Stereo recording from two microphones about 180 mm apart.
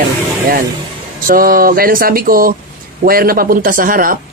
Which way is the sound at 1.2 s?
50° right (ahead or behind).